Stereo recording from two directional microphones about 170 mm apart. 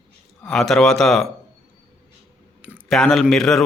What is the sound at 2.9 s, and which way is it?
Speech, centre (ahead or behind).